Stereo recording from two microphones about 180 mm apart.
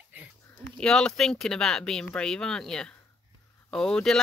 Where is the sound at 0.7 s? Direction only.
5° left (ahead or behind).